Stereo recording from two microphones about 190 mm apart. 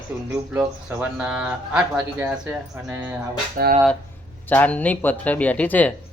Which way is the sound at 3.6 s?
50° right (ahead or behind).